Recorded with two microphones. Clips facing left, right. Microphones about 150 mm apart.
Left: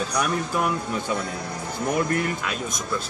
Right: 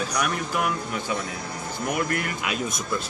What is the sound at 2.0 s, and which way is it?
Speech, 30° left (ahead or behind).